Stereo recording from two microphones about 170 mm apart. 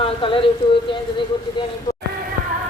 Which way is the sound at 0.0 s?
30° left (ahead or behind).